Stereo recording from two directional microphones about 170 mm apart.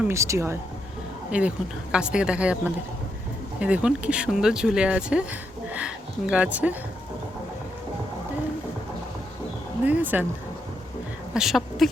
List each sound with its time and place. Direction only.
0.1 s a woman's voice: 15° right (ahead or behind)
3.6 s speech: 5° right (ahead or behind)
9.8 s a woman's voice: 10° right (ahead or behind)
11.3 s speech: centre (ahead or behind)